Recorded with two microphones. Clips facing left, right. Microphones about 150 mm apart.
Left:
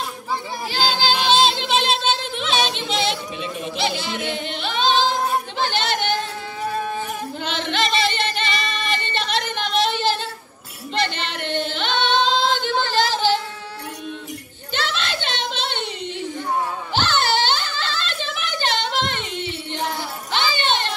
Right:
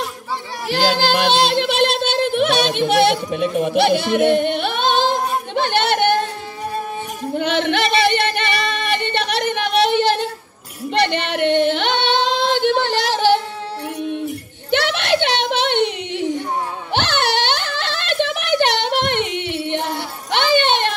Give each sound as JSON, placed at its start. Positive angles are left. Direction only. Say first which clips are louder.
{"t": 0.7, "sound": "music", "louder": "right 5 dB", "side_deg": -65}
{"t": 7.3, "sound": "singing", "louder": "right 8 dB", "side_deg": -60}
{"t": 14.7, "sound": "a sound", "louder": "right 9 dB", "side_deg": -70}
{"t": 20.2, "sound": "music", "louder": "right 7 dB", "side_deg": -65}